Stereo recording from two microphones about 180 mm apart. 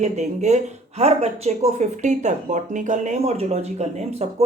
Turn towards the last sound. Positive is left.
turn(degrees=-35)  # may be behind; listen again after turning